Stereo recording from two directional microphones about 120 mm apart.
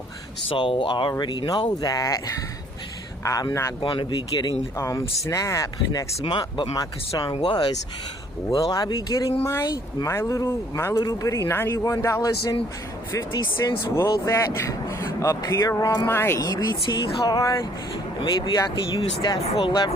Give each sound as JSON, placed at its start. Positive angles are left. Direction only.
{"t": 0.5, "sound": "a man's voice", "side_deg": 45}
{"t": 8.7, "sound": "a man's voice", "side_deg": 30}
{"t": 13.3, "sound": "speech", "side_deg": 40}
{"t": 13.9, "sound": "a man's voice", "side_deg": 25}
{"t": 16.4, "sound": "speech", "side_deg": 35}
{"t": 18.7, "sound": "speech", "side_deg": 40}
{"t": 19.4, "sound": "speech", "side_deg": 50}